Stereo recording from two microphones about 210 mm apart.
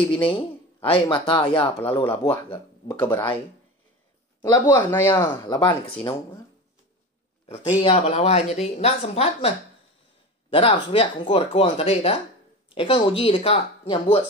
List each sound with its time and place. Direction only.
0.1 s speech: 25° left (ahead or behind)
3.0 s speech: 15° left (ahead or behind)
4.4 s speech: 15° left (ahead or behind)
7.4 s speech: 30° left (ahead or behind)
10.5 s speech: 25° left (ahead or behind)